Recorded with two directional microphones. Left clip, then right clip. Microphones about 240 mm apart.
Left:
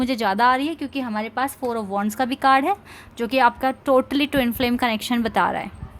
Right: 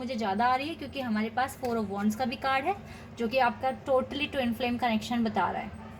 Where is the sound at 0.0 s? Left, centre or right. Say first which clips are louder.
Left 9 dB; left.